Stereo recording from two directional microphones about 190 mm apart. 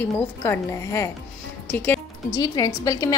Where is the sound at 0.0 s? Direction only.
15° left (ahead or behind).